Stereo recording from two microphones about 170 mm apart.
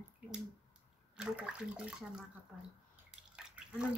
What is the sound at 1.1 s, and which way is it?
Speech, 5° right (ahead or behind).